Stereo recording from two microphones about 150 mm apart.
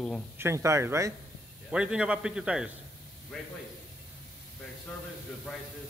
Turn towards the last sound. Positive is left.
turn(degrees=-5)  # may be behind; listen again after turning